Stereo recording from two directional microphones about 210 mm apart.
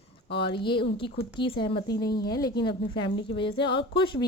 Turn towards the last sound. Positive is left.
turn(degrees=25)  # may be behind; listen again after turning